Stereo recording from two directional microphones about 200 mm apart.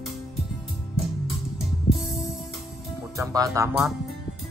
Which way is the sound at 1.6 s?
Centre (ahead or behind).